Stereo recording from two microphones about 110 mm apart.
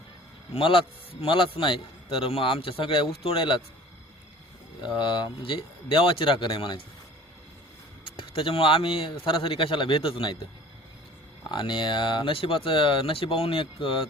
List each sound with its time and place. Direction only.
0.5 s a man's voice: 50° left (ahead or behind)
4.8 s a man's voice: 45° left (ahead or behind)
8.0 s a man's voice: 50° left (ahead or behind)
11.5 s a man's voice: 45° left (ahead or behind)